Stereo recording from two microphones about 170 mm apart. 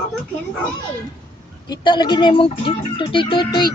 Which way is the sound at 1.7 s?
25° left (ahead or behind).